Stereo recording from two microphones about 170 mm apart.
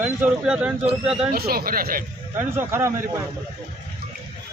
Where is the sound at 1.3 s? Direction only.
65° right (ahead or behind).